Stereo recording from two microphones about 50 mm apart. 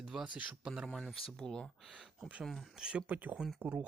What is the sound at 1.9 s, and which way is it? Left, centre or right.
Speech, centre.